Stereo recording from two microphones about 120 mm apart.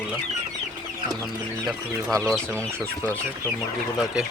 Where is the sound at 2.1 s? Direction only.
5° left (ahead or behind).